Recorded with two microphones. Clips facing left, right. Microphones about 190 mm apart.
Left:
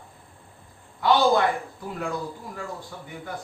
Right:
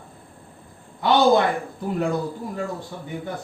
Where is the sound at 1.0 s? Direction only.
25° right (ahead or behind).